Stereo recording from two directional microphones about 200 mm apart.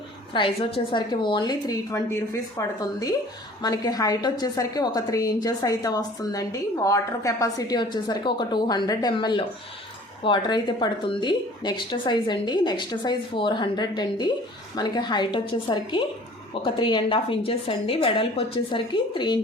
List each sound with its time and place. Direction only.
0.3 s a woman's voice: 25° left (ahead or behind)